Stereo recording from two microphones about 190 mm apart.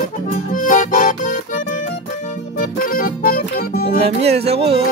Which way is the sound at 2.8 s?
50° left (ahead or behind).